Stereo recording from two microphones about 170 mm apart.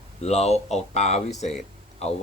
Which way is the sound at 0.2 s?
40° left (ahead or behind).